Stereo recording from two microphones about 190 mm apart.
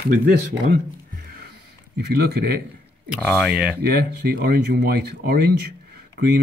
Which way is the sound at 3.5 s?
5° right (ahead or behind).